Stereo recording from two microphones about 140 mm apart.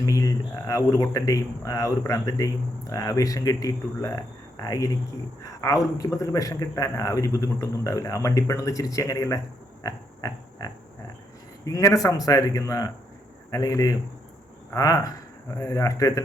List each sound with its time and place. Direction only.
0.0 s speech: 25° left (ahead or behind)
9.8 s pig: 25° left (ahead or behind)
11.6 s speech: 25° left (ahead or behind)